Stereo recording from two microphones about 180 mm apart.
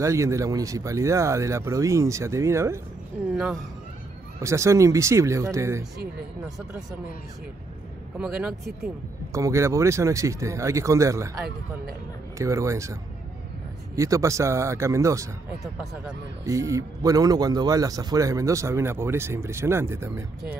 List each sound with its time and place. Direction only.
0.0 s speech: 15° right (ahead or behind)
4.4 s speech: 15° right (ahead or behind)
6.4 s speech: 5° right (ahead or behind)
8.2 s speech: 5° right (ahead or behind)
9.3 s speech: 15° right (ahead or behind)
12.4 s speech: 15° right (ahead or behind)
13.9 s speech: 15° right (ahead or behind)
15.6 s speech: centre (ahead or behind)
16.4 s speech: 15° right (ahead or behind)